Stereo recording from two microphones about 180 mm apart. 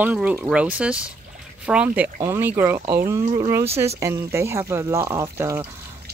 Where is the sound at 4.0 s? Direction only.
15° right (ahead or behind).